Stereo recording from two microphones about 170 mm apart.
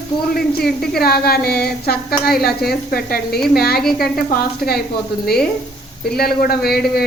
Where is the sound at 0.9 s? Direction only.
65° left (ahead or behind).